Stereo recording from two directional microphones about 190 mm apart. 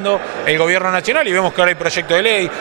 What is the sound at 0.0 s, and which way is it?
A man's voice, 20° right (ahead or behind).